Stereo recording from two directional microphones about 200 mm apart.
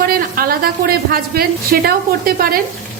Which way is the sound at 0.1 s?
45° right (ahead or behind).